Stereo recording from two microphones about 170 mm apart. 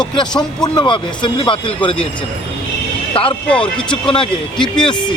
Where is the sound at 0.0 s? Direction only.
25° left (ahead or behind).